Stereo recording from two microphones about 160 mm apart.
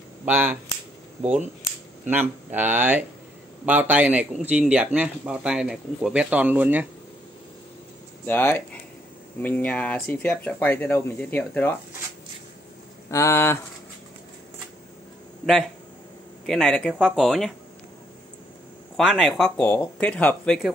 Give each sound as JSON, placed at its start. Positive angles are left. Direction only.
{"t": 0.2, "sound": "speech", "side_deg": -10}
{"t": 2.0, "sound": "speech", "side_deg": -10}
{"t": 8.3, "sound": "speech", "side_deg": 15}
{"t": 13.1, "sound": "speech", "side_deg": 15}
{"t": 16.4, "sound": "speech", "side_deg": 5}
{"t": 18.9, "sound": "speech", "side_deg": 0}